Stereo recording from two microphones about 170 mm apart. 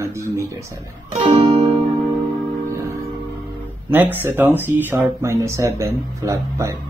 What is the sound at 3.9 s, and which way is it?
Speech, 10° right (ahead or behind).